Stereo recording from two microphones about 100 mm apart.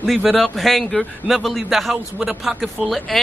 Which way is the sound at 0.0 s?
5° left (ahead or behind).